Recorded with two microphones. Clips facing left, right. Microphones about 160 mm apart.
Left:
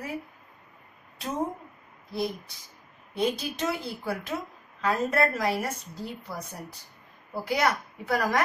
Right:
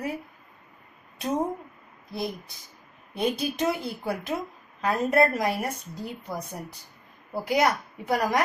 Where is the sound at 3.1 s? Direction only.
20° right (ahead or behind).